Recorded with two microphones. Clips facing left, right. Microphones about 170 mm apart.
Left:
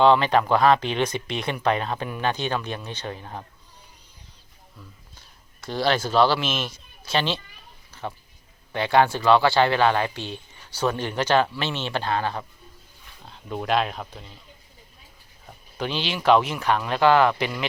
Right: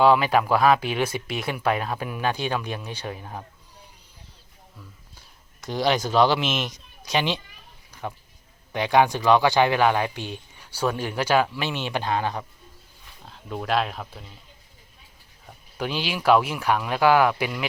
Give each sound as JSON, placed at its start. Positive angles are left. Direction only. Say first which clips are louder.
{"t": 0.0, "sound": "speech", "louder": "left 1 dB", "side_deg": -5}
{"t": 5.5, "sound": "speech", "louder": "even", "side_deg": -15}
{"t": 7.9, "sound": "a sound", "louder": "even", "side_deg": -15}
{"t": 8.7, "sound": "speech", "louder": "even", "side_deg": -15}
{"t": 13.2, "sound": "speech", "louder": "left 1 dB", "side_deg": 0}
{"t": 15.8, "sound": "speech", "louder": "even", "side_deg": -10}